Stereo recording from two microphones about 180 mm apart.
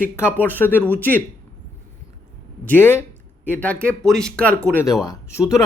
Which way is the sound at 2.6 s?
10° left (ahead or behind).